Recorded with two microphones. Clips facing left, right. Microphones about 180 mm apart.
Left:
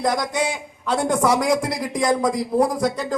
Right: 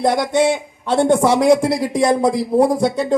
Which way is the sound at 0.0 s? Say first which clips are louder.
Right 6 dB; 30° right (ahead or behind).